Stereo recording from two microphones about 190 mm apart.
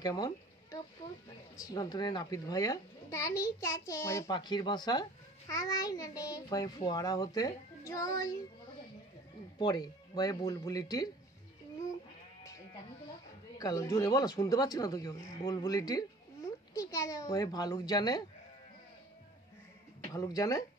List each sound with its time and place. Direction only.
0.0 s a sound: 20° left (ahead or behind)
1.6 s a child's voice: 20° left (ahead or behind)
9.6 s a child's voice: 20° left (ahead or behind)
13.6 s a child's voice: 20° left (ahead or behind)
20.1 s a child's voice: 20° left (ahead or behind)